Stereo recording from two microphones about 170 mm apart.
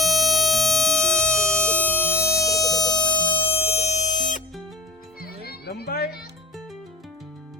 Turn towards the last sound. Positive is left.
turn(degrees=65)  # may be behind; listen again after turning